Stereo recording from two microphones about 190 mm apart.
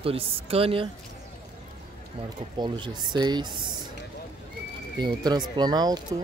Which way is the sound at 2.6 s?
25° right (ahead or behind).